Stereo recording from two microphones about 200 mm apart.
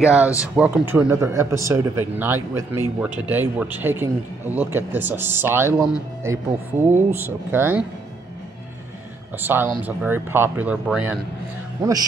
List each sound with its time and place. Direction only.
0.0 s a man's voice: 5° right (ahead or behind)
9.4 s a man's voice: 10° right (ahead or behind)
11.8 s a man's voice: 20° right (ahead or behind)